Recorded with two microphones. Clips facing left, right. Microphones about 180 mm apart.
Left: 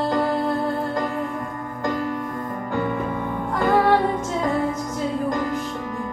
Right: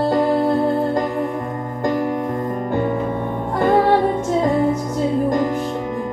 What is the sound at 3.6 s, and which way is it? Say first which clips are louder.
Music: right 3 dB; 20° right (ahead or behind).